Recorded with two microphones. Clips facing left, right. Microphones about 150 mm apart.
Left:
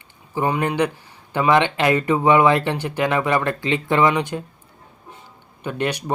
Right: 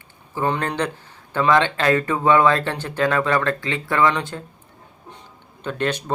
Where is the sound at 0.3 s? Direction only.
15° left (ahead or behind).